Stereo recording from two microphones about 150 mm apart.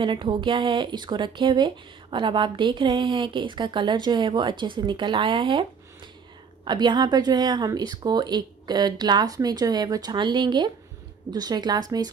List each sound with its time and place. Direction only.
0.0 s a woman's voice: 30° right (ahead or behind)